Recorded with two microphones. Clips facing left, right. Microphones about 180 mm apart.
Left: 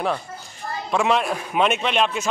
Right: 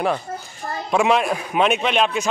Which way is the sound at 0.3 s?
40° right (ahead or behind).